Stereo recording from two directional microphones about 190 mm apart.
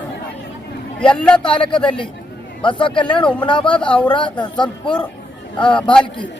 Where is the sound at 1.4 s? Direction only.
25° left (ahead or behind).